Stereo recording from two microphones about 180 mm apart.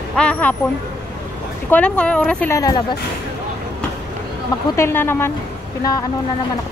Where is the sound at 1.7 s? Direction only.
5° left (ahead or behind).